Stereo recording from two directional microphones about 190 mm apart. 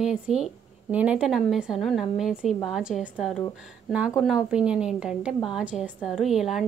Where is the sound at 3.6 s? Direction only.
5° right (ahead or behind).